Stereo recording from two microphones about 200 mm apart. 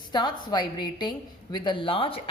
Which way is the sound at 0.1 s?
20° left (ahead or behind).